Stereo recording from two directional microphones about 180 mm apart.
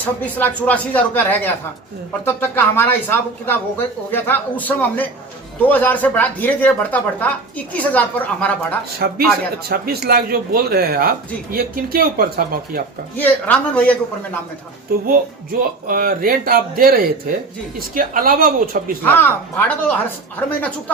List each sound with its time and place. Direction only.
0.3 s a woman's voice: 10° left (ahead or behind)
9.0 s a man's voice: 60° right (ahead or behind)
13.1 s a woman's voice: 10° left (ahead or behind)
15.0 s speech: 50° right (ahead or behind)
19.0 s a woman's voice: 10° left (ahead or behind)